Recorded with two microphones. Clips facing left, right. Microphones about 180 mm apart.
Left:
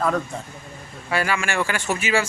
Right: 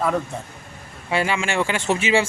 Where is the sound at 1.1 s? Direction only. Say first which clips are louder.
Right 2 dB; 25° right (ahead or behind).